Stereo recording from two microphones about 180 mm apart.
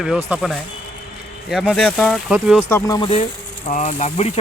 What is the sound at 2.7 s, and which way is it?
Speech, 15° left (ahead or behind).